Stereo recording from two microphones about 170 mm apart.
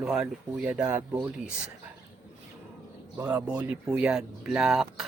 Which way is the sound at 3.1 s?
15° right (ahead or behind).